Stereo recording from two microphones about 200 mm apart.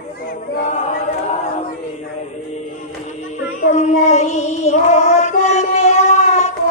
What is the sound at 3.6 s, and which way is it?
Child singing, 40° left (ahead or behind).